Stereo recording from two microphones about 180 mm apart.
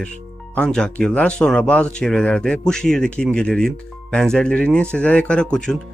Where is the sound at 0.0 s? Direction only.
5° left (ahead or behind).